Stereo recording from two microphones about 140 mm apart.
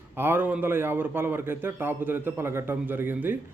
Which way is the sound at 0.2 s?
15° right (ahead or behind).